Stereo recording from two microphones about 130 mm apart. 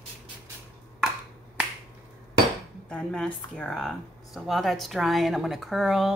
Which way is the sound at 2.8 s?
5° left (ahead or behind).